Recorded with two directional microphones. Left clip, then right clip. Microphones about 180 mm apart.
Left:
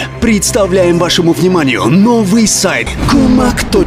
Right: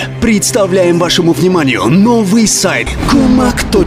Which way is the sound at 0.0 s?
Centre (ahead or behind).